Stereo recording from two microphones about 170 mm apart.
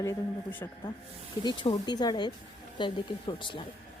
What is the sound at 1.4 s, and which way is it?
A woman's voice, 25° left (ahead or behind).